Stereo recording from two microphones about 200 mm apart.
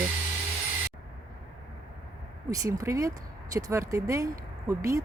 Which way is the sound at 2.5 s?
15° right (ahead or behind).